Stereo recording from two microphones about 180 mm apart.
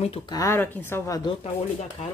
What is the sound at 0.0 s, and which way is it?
Speech, 30° left (ahead or behind).